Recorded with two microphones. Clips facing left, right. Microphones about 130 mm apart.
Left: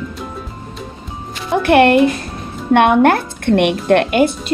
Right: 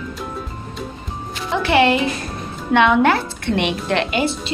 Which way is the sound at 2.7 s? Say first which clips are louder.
Left 4 dB; 50° left (ahead or behind).